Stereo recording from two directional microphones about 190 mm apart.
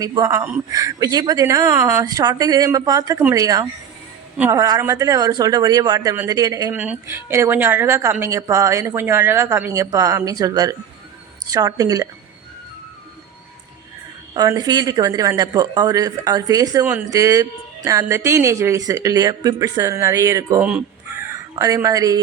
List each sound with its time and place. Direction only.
0.0 s speech: 20° right (ahead or behind)
14.3 s speech: 20° right (ahead or behind)